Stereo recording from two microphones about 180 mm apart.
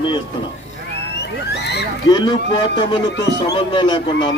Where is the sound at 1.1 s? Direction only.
65° left (ahead or behind).